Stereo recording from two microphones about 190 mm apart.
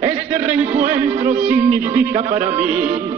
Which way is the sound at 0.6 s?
35° right (ahead or behind).